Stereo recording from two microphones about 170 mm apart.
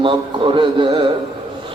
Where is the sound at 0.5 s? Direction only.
30° right (ahead or behind).